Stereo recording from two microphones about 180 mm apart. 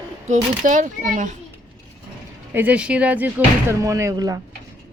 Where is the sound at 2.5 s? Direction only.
10° right (ahead or behind).